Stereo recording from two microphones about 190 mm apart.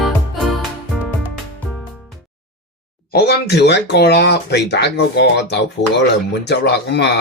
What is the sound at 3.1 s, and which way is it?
Speech, 55° left (ahead or behind).